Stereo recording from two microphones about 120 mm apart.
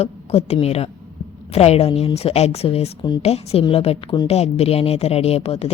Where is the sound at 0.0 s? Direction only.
60° left (ahead or behind).